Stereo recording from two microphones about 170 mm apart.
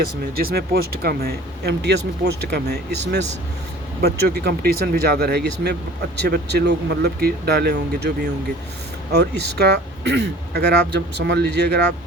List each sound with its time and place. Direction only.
0.3 s speech: 60° right (ahead or behind)
4.0 s speech: 70° right (ahead or behind)